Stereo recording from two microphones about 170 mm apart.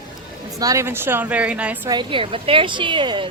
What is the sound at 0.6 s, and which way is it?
A woman's voice, 20° right (ahead or behind).